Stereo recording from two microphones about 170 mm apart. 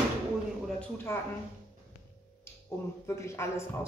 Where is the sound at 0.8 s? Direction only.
15° left (ahead or behind).